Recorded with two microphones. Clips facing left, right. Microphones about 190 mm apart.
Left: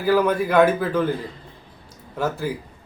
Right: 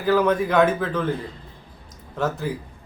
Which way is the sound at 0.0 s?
10° left (ahead or behind).